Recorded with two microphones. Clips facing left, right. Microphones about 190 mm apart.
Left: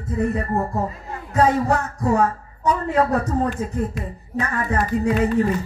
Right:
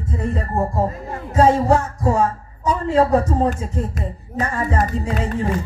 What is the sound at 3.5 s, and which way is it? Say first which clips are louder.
Speech: left 1 dB; 45° right (ahead or behind).